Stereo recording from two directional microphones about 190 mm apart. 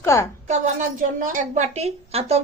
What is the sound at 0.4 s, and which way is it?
A woman's voice, 40° right (ahead or behind).